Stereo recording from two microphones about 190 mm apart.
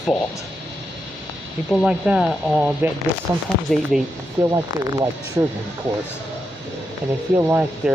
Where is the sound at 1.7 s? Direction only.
5° right (ahead or behind).